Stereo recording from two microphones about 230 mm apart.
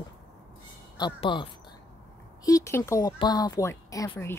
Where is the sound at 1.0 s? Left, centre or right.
Centre.